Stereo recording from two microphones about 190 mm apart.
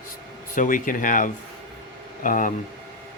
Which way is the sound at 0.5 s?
45° left (ahead or behind).